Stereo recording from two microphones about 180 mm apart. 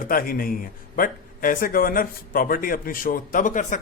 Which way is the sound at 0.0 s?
50° left (ahead or behind).